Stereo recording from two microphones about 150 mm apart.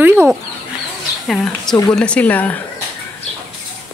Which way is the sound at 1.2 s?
5° left (ahead or behind).